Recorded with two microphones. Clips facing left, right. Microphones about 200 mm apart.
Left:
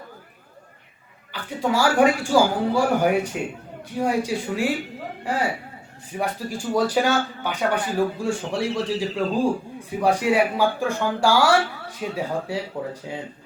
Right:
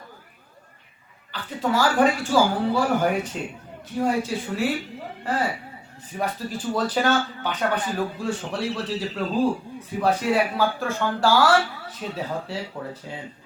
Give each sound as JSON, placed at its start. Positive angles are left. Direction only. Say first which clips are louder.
{"t": 1.3, "sound": "speech", "louder": "left 1 dB", "side_deg": 10}